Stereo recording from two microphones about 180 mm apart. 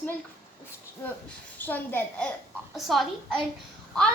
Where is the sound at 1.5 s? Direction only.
10° left (ahead or behind).